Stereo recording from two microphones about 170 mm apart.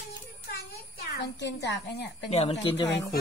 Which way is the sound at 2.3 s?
35° left (ahead or behind).